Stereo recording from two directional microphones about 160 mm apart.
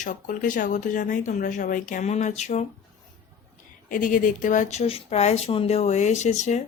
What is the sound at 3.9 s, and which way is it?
Speech, 60° left (ahead or behind).